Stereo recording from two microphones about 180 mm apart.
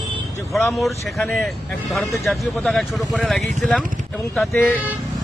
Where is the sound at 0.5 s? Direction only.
Centre (ahead or behind).